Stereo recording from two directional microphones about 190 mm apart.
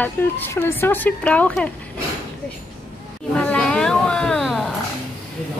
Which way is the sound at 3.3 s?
5° left (ahead or behind).